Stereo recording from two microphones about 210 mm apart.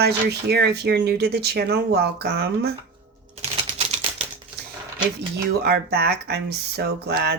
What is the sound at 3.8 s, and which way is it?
Typewriter, 25° right (ahead or behind).